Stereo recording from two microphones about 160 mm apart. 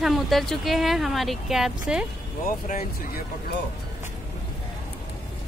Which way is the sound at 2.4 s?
65° left (ahead or behind).